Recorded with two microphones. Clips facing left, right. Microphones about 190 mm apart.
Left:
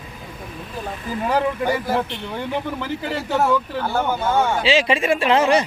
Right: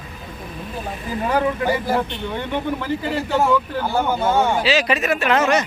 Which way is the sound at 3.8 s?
10° right (ahead or behind).